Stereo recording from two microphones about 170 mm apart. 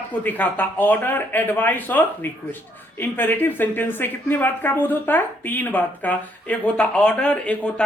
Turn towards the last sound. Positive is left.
turn(degrees=5)  # may be behind; listen again after turning